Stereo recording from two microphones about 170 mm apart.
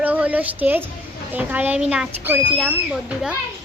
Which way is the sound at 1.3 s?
10° right (ahead or behind).